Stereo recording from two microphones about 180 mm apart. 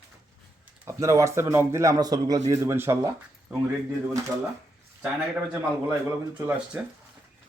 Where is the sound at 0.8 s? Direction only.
15° right (ahead or behind).